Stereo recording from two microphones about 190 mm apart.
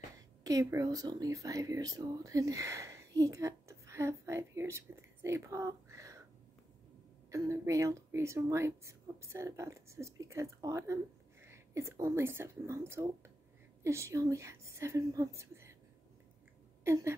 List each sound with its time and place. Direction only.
0.4 s speech: 20° right (ahead or behind)
7.2 s speech: 15° right (ahead or behind)
16.8 s a sound: 15° right (ahead or behind)